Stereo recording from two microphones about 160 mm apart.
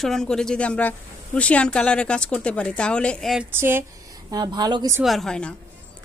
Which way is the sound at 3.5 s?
15° right (ahead or behind).